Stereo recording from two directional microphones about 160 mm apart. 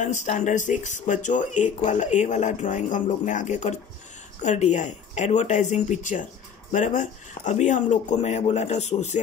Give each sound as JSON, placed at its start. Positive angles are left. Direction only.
{"t": 0.0, "sound": "speech", "side_deg": 50}